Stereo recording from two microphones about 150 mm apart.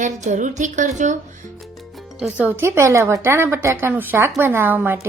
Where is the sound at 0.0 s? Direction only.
55° right (ahead or behind).